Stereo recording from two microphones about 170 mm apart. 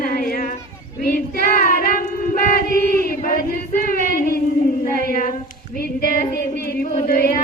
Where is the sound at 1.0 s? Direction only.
55° left (ahead or behind).